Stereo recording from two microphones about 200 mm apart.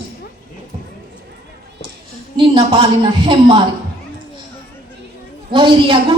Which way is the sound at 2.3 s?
25° right (ahead or behind).